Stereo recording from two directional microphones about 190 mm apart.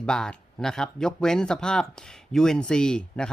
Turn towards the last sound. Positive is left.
turn(degrees=5)  # may be behind; listen again after turning